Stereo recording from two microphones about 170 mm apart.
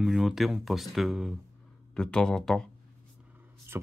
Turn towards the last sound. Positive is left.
turn(degrees=-15)  # may be behind; listen again after turning